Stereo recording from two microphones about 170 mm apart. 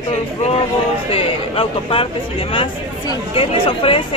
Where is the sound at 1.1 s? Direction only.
35° left (ahead or behind).